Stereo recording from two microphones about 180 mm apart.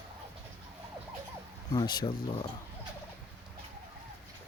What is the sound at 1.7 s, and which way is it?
Speech, 25° left (ahead or behind).